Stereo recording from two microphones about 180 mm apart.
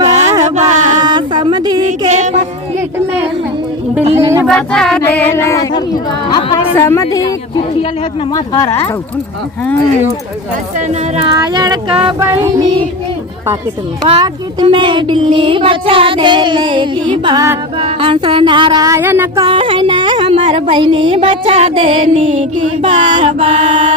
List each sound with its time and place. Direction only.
0.0 s a sound: 40° right (ahead or behind)
1.0 s a sound: 25° right (ahead or behind)
1.9 s a sound: 40° right (ahead or behind)
4.0 s speech: 30° right (ahead or behind)
4.4 s a sound: 5° left (ahead or behind)
8.3 s speech: 20° left (ahead or behind)
10.8 s speech: 40° right (ahead or behind)
11.3 s speech: 20° right (ahead or behind)
12.2 s music: 15° right (ahead or behind)
14.0 s speech: 25° right (ahead or behind)
17.7 s speech: 30° right (ahead or behind); by 19.5 s 10° right (ahead or behind)
19.5 s speech: 30° right (ahead or behind)